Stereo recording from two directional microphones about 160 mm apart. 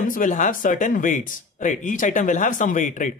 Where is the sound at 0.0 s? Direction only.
55° left (ahead or behind).